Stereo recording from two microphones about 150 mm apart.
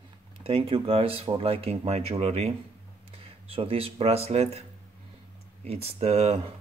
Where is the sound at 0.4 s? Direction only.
40° right (ahead or behind).